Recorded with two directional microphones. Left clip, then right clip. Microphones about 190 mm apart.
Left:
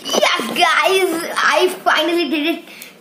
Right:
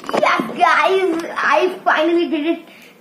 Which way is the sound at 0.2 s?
10° left (ahead or behind).